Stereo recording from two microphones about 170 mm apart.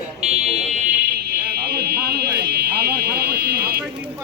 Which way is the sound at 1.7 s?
70° right (ahead or behind).